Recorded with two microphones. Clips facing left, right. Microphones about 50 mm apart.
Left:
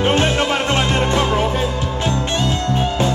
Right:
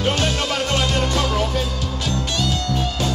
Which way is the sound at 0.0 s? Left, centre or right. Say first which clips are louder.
Left 5 dB; left.